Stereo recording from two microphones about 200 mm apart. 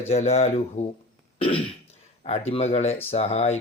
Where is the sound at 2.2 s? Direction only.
30° left (ahead or behind).